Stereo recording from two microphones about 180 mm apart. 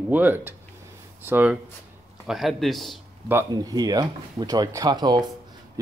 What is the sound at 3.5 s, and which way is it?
Speech, 20° right (ahead or behind).